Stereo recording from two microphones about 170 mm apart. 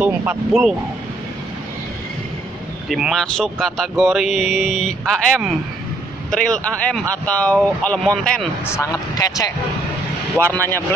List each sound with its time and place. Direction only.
0.0 s speech: 10° right (ahead or behind)
2.9 s speech: centre (ahead or behind)
8.6 s speech: 20° left (ahead or behind)